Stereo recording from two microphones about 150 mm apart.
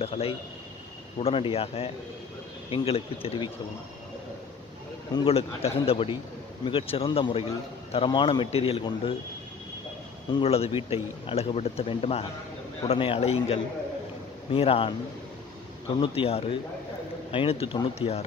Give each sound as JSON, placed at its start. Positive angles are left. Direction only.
{"t": 0.0, "sound": "a man's voice", "side_deg": 40}
{"t": 5.1, "sound": "a man's voice", "side_deg": 40}
{"t": 10.4, "sound": "a man's voice", "side_deg": 40}
{"t": 16.0, "sound": "a man's voice", "side_deg": 40}